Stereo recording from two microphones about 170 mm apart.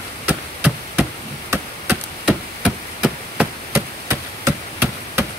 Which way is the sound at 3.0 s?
10° right (ahead or behind).